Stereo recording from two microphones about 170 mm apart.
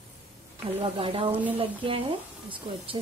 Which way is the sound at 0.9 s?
35° right (ahead or behind).